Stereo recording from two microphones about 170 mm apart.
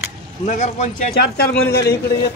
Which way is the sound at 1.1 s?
65° left (ahead or behind).